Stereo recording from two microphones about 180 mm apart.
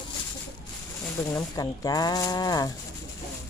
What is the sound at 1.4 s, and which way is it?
Speech, 20° left (ahead or behind).